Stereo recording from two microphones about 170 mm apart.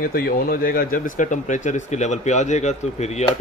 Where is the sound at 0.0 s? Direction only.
60° left (ahead or behind).